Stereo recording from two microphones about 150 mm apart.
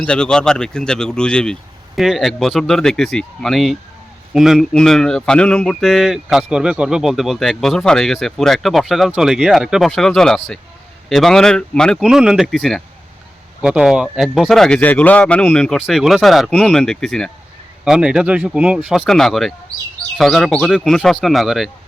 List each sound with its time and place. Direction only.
0.0 s speech: 5° left (ahead or behind)